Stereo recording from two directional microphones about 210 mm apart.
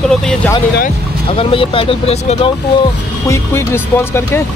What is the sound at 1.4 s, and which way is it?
Speech, 25° left (ahead or behind).